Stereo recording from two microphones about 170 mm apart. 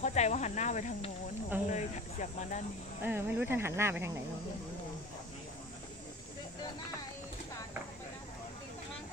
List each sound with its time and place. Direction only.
0.0 s speech: 45° left (ahead or behind)
3.0 s speech: 10° right (ahead or behind)